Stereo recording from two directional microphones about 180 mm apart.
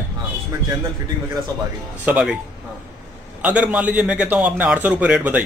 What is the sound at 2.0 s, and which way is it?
Speech, 10° right (ahead or behind).